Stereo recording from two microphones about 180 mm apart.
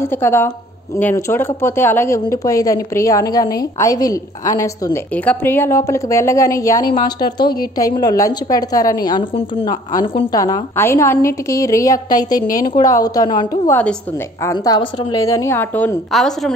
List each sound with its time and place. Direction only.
0.0 s speech: 15° left (ahead or behind)
5.1 s a woman's voice: 10° left (ahead or behind)